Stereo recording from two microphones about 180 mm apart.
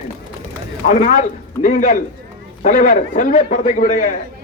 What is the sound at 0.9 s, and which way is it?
A man's voice, 45° left (ahead or behind).